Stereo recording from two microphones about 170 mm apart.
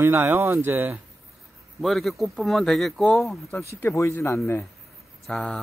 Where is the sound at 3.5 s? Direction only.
15° left (ahead or behind).